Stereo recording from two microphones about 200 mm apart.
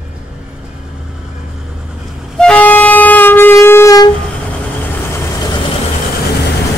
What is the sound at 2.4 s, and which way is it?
Train, 5° left (ahead or behind).